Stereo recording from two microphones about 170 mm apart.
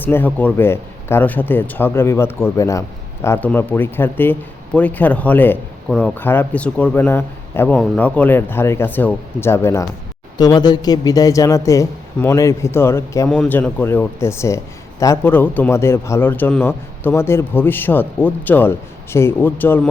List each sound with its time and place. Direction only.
0.0 s speech: 10° left (ahead or behind)